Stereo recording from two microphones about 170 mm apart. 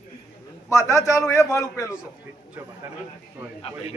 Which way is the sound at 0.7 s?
15° left (ahead or behind).